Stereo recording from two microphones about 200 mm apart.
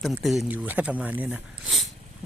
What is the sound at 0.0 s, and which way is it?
Speech, centre (ahead or behind).